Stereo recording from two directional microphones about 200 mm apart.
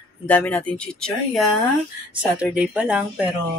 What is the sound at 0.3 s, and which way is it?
Speech, 5° left (ahead or behind).